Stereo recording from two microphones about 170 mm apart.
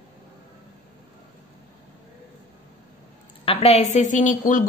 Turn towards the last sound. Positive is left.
turn(degrees=50)  # may be behind; listen again after turning